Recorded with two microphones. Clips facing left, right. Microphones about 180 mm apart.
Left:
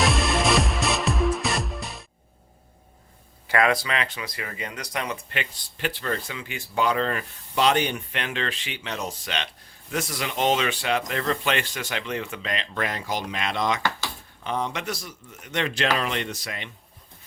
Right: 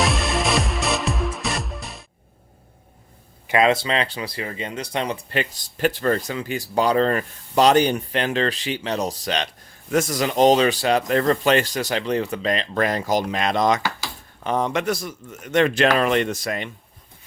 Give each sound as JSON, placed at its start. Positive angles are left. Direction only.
{"t": 0.0, "sound": "music", "side_deg": 0}
{"t": 3.4, "sound": "speech", "side_deg": -20}